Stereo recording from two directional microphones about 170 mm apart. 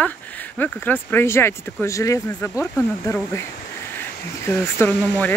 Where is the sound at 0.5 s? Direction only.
10° left (ahead or behind).